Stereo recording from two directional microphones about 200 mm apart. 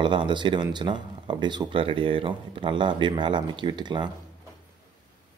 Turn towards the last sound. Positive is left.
turn(degrees=-25)  # may be behind; listen again after turning